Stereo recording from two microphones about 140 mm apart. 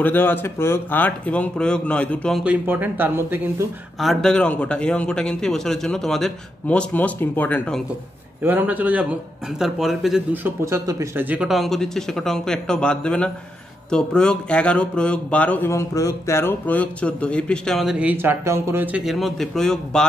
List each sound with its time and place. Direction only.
0.0 s speech: 15° left (ahead or behind)
2.4 s speech: 10° right (ahead or behind)
4.0 s speech: centre (ahead or behind)
8.4 s speech: 15° right (ahead or behind)
10.3 s speech: 15° right (ahead or behind)
11.2 s speech: 5° right (ahead or behind)